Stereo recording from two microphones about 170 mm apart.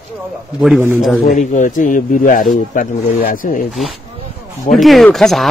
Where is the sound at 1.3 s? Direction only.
50° left (ahead or behind).